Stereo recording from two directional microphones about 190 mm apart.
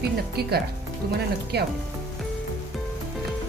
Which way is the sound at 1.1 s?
60° right (ahead or behind).